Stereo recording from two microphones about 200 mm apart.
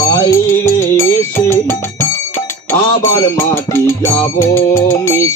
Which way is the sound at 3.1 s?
10° left (ahead or behind).